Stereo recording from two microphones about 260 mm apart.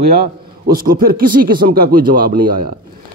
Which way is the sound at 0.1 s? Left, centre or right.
Right.